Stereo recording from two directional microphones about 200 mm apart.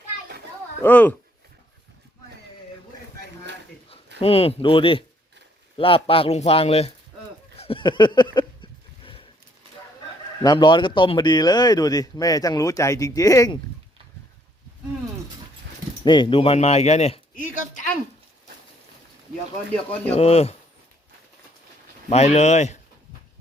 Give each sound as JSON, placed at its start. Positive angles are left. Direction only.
{"t": 0.8, "sound": "speech", "side_deg": 10}
{"t": 4.2, "sound": "speech", "side_deg": 30}
{"t": 7.6, "sound": "a sound", "side_deg": 25}
{"t": 10.4, "sound": "speech", "side_deg": 20}
{"t": 16.0, "sound": "speech", "side_deg": 25}
{"t": 17.3, "sound": "a sound", "side_deg": 40}
{"t": 20.1, "sound": "speech", "side_deg": 30}
{"t": 22.1, "sound": "speech", "side_deg": 35}